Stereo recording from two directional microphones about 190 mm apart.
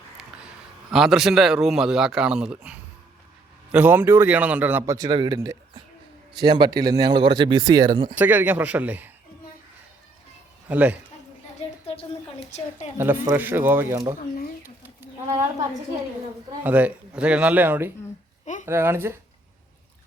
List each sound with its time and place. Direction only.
0.2 s a man's voice: 5° right (ahead or behind); by 8.1 s 25° right (ahead or behind)
8.1 s a man's voice: 10° right (ahead or behind)
10.7 s a man's voice: 10° right (ahead or behind)
11.9 s a sound: 30° left (ahead or behind)
13.0 s a man's voice: 10° right (ahead or behind)
14.2 s speech: 50° left (ahead or behind)
14.6 s bird: 10° right (ahead or behind)
16.6 s a man's voice: 10° right (ahead or behind)